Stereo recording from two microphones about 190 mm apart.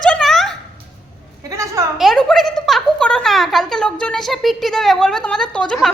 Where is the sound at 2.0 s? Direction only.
Centre (ahead or behind).